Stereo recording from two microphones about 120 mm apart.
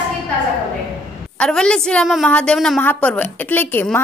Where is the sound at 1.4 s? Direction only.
5° left (ahead or behind).